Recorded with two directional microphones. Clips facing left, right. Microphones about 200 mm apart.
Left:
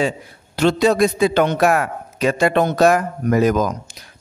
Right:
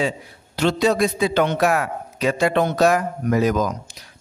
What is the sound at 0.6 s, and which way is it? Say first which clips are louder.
A man's voice: left 3 dB; 50° left (ahead or behind).